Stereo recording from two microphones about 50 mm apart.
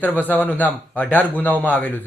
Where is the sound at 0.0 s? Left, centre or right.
Left.